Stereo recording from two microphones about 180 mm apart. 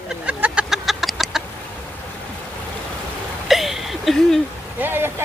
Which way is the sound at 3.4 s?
Centre (ahead or behind).